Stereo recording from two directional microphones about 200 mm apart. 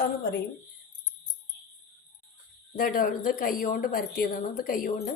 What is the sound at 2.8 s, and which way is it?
A woman's voice, 45° left (ahead or behind).